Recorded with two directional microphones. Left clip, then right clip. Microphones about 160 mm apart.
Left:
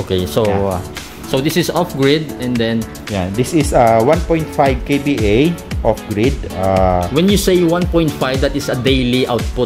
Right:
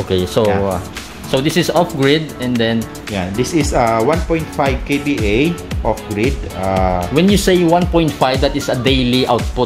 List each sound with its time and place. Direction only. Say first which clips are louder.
0.1 s speech: right 1 dB; 5° left (ahead or behind)
3.2 s speech: left 1 dB; 50° left (ahead or behind)
7.2 s speech: right 3 dB; centre (ahead or behind)